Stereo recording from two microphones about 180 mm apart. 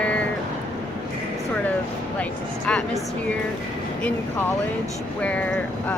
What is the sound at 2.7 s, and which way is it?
Speech, 5° left (ahead or behind).